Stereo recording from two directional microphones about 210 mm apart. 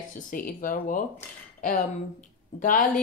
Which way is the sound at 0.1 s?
40° left (ahead or behind).